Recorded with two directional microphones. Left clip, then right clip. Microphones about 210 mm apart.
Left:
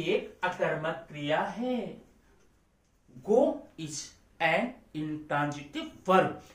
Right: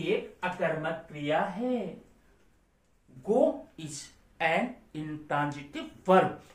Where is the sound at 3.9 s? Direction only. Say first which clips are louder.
Left 3 dB; 15° right (ahead or behind).